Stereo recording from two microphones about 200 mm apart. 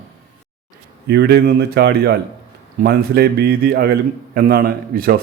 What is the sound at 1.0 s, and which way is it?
Speech, 55° right (ahead or behind).